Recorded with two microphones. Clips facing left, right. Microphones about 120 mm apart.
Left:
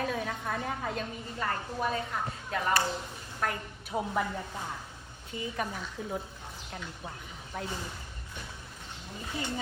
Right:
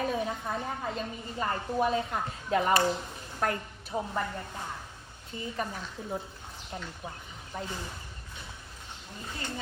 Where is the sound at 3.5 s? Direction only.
10° left (ahead or behind).